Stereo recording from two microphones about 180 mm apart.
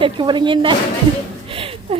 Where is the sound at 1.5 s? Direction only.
30° right (ahead or behind).